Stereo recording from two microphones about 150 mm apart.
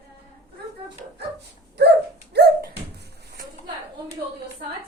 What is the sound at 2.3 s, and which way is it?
Dog, 90° right.